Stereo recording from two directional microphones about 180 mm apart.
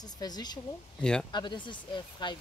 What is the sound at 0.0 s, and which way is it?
Speech, 20° left (ahead or behind).